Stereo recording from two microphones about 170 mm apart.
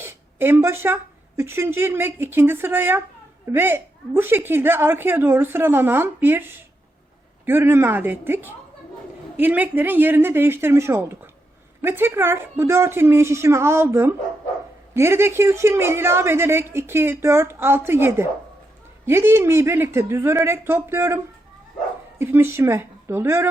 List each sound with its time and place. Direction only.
0.0 s a sound: 15° right (ahead or behind)
1.4 s a woman's voice: 15° right (ahead or behind)
22.2 s a woman's voice: 15° right (ahead or behind)